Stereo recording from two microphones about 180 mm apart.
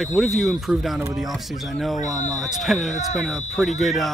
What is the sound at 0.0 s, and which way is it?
Speech, centre (ahead or behind).